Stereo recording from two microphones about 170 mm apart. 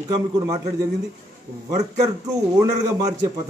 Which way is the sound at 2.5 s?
20° right (ahead or behind).